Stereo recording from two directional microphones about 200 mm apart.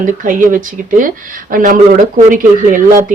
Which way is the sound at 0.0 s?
40° right (ahead or behind).